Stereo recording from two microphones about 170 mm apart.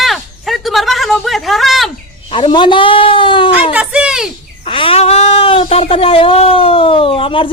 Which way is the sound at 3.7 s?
5° right (ahead or behind).